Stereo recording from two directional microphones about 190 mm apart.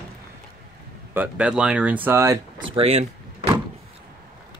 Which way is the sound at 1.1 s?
10° right (ahead or behind).